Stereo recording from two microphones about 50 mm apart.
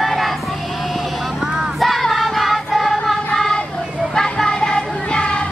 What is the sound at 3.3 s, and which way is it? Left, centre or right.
Child singing, centre.